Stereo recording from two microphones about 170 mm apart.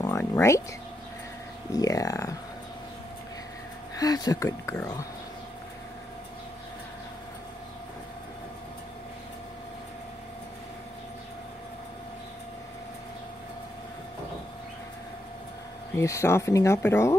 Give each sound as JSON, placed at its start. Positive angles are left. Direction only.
{"t": 0.0, "sound": "a sound", "side_deg": 20}
{"t": 1.7, "sound": "speech", "side_deg": 20}
{"t": 3.9, "sound": "speech", "side_deg": 20}
{"t": 16.0, "sound": "speech", "side_deg": 15}